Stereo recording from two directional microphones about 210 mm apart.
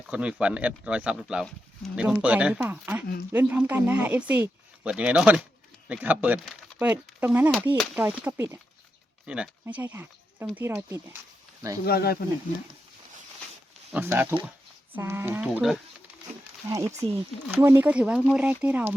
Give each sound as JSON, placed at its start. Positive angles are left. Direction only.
{"t": 0.1, "sound": "speech", "side_deg": -5}
{"t": 11.9, "sound": "speech", "side_deg": 50}
{"t": 13.9, "sound": "speech", "side_deg": -10}
{"t": 16.6, "sound": "speech", "side_deg": -15}